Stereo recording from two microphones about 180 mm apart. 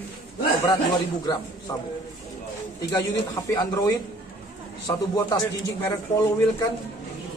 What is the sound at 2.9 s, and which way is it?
A man's voice, 20° left (ahead or behind).